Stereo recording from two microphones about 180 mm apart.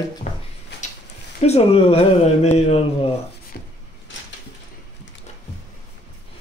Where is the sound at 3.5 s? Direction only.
55° left (ahead or behind).